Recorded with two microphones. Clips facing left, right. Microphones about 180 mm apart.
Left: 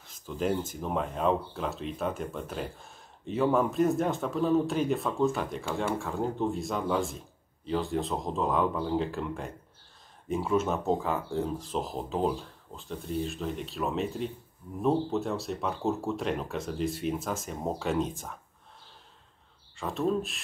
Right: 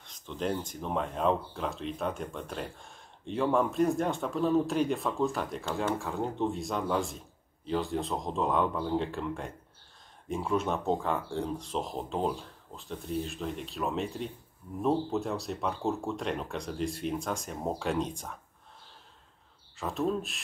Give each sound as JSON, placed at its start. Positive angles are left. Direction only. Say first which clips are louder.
{"t": 0.0, "sound": "speech", "louder": "left 3 dB", "side_deg": 5}
{"t": 19.8, "sound": "speech", "louder": "left 2 dB", "side_deg": 0}